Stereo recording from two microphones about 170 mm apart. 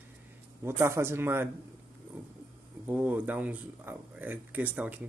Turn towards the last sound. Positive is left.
turn(degrees=-10)  # may be behind; listen again after turning